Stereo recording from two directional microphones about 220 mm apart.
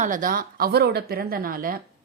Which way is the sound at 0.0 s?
35° right (ahead or behind).